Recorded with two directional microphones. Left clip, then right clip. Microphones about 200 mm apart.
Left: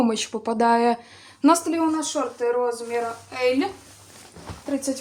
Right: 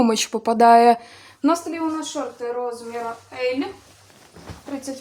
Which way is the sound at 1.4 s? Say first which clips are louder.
Left 2 dB; 5° left (ahead or behind).